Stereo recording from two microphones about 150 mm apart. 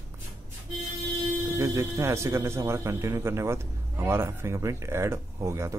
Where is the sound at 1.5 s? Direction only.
20° right (ahead or behind).